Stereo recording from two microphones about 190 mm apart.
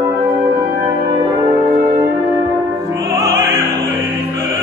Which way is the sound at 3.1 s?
15° right (ahead or behind).